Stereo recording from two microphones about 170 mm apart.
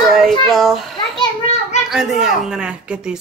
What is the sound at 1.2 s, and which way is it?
Children playing, 35° left (ahead or behind).